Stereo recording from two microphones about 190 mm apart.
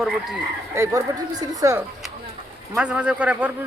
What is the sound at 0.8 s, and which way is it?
Speech, 15° right (ahead or behind).